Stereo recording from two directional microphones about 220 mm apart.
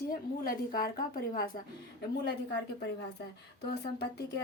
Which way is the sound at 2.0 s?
50° left (ahead or behind).